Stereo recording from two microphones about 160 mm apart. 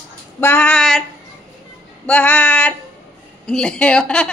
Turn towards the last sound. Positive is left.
turn(degrees=5)  # may be behind; listen again after turning